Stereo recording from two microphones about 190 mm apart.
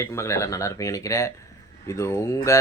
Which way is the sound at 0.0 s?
15° left (ahead or behind).